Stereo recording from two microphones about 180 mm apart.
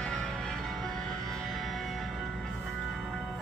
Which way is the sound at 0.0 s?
5° left (ahead or behind).